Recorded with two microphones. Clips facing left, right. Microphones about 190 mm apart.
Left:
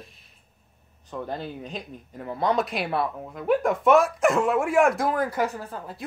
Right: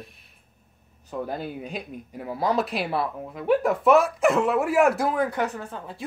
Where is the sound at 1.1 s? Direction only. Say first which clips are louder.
Right 2 dB; 10° right (ahead or behind).